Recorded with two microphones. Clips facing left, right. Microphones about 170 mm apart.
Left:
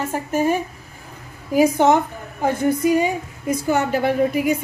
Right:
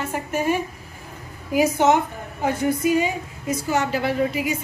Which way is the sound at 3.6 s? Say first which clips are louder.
Left 3 dB; 50° left (ahead or behind).